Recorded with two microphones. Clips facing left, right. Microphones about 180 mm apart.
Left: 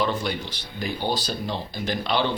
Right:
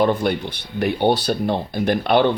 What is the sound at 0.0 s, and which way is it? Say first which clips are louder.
Speech: right 7 dB; 55° right (ahead or behind).